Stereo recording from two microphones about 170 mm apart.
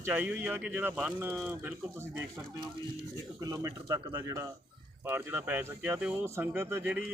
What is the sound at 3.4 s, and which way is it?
Speech, 20° right (ahead or behind).